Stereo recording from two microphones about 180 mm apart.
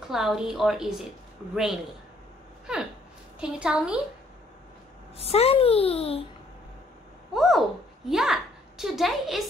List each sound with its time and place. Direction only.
0.1 s a woman's voice: centre (ahead or behind)
2.6 s a sound: 5° right (ahead or behind)
3.3 s a woman's voice: 5° right (ahead or behind)
5.1 s a child's voice: 35° left (ahead or behind)
7.3 s a woman's voice: centre (ahead or behind)